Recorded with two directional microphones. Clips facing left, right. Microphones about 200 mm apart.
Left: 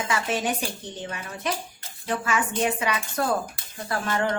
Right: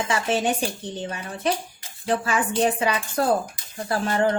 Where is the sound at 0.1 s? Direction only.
30° right (ahead or behind).